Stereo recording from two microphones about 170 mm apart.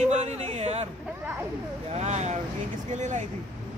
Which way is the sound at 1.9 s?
40° right (ahead or behind).